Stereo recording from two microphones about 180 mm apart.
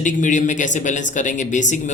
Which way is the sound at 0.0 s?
45° left (ahead or behind).